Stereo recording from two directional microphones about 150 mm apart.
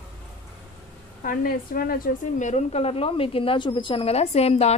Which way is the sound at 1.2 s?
75° left (ahead or behind).